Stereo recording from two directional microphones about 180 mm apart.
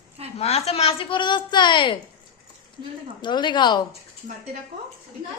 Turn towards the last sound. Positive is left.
turn(degrees=25)  # may be behind; listen again after turning